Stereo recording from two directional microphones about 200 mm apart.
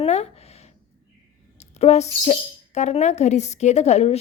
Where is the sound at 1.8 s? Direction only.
35° left (ahead or behind).